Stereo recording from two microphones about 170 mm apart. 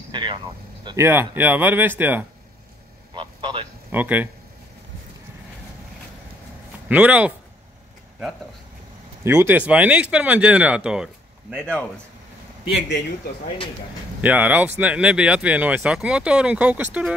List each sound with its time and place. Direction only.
0.1 s vehicle: 25° right (ahead or behind)
0.9 s speech: 15° right (ahead or behind)
3.2 s a sound: 30° right (ahead or behind)
3.9 s speech: 10° right (ahead or behind)
6.9 s speech: 10° right (ahead or behind)
9.2 s speech: 15° right (ahead or behind)
12.7 s a man's voice: 90° left
14.2 s speech: 10° right (ahead or behind)